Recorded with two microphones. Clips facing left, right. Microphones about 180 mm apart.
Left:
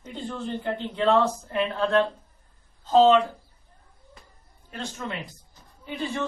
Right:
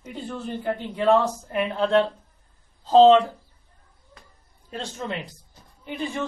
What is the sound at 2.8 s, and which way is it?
Speech, 35° right (ahead or behind).